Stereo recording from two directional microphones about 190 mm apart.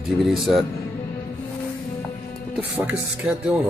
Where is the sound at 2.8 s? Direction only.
5° right (ahead or behind).